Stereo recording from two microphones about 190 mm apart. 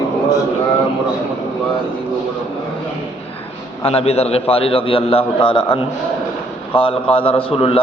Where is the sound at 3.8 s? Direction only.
30° left (ahead or behind).